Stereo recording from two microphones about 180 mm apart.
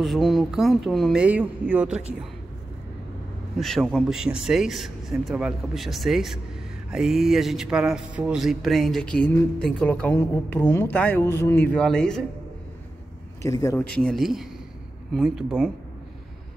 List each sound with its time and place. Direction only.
0.0 s speech: centre (ahead or behind)
3.5 s speech: centre (ahead or behind)
13.4 s speech: 15° left (ahead or behind)
13.9 s speech: centre (ahead or behind)